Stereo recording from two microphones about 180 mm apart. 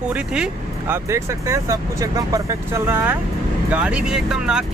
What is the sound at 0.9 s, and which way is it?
Speech, 15° right (ahead or behind).